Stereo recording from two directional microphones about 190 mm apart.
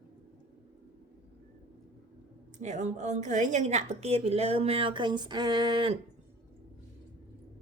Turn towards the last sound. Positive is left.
turn(degrees=-25)  # may be behind; listen again after turning